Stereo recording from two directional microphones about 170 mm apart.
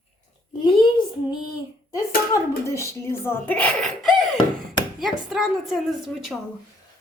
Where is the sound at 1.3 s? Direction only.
20° left (ahead or behind).